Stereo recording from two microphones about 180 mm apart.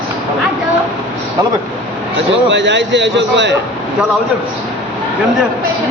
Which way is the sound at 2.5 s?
90° right.